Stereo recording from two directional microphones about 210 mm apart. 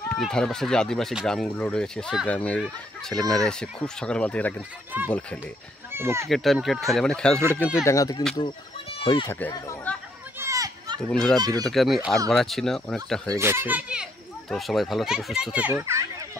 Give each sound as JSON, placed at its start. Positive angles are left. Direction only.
{"t": 0.1, "sound": "speech", "side_deg": 5}
{"t": 5.9, "sound": "speech", "side_deg": -10}
{"t": 6.2, "sound": "speech", "side_deg": 0}
{"t": 9.3, "sound": "speech", "side_deg": 15}
{"t": 10.4, "sound": "children playing", "side_deg": -15}
{"t": 11.1, "sound": "speech", "side_deg": 5}
{"t": 11.3, "sound": "speech", "side_deg": -20}
{"t": 11.6, "sound": "speech", "side_deg": 0}
{"t": 13.4, "sound": "a child's voice", "side_deg": -10}